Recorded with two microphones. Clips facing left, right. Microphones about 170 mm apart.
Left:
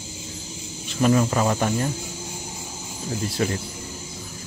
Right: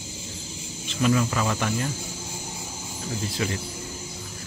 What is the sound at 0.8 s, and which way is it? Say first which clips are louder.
Cricket: left 3 dB; 40° left (ahead or behind).